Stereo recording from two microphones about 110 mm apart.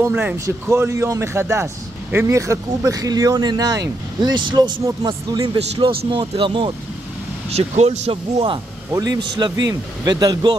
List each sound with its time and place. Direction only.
0.1 s a man's voice: 10° right (ahead or behind)
0.5 s a man's voice: 25° right (ahead or behind); by 6.7 s 50° right (ahead or behind)
7.5 s speech: 90° right
8.1 s speech: 55° right (ahead or behind)
8.9 s speech: 30° right (ahead or behind)